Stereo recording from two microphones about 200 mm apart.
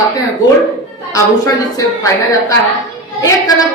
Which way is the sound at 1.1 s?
15° left (ahead or behind).